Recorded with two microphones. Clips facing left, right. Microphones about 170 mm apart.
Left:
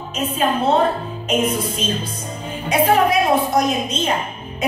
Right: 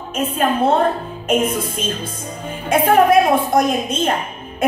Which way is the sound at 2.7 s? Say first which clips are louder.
Right 3 dB; 50° right (ahead or behind).